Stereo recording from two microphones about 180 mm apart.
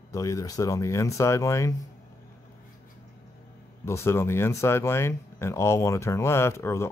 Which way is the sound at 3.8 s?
15° left (ahead or behind).